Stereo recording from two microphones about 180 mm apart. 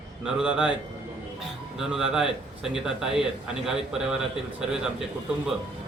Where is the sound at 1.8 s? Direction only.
5° right (ahead or behind).